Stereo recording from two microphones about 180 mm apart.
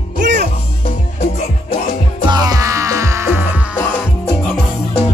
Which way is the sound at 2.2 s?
20° right (ahead or behind).